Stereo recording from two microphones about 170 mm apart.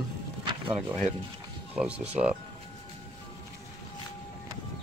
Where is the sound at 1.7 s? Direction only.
5° right (ahead or behind).